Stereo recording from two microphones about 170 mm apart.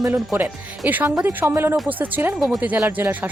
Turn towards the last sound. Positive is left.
turn(degrees=-10)  # may be behind; listen again after turning